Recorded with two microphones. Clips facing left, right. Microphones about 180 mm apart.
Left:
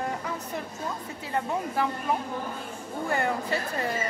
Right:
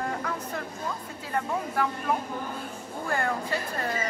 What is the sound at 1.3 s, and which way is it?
Speech, 20° left (ahead or behind).